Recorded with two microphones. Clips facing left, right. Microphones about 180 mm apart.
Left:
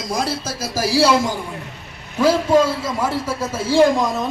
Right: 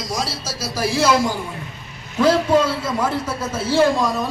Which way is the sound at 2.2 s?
10° left (ahead or behind).